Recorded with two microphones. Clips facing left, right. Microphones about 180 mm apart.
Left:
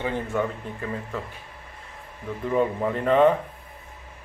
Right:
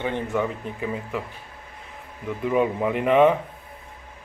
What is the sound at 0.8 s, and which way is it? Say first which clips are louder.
Speech: right 3 dB; 15° right (ahead or behind).